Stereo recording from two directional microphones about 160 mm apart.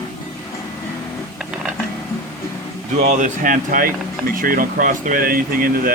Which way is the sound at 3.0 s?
50° right (ahead or behind).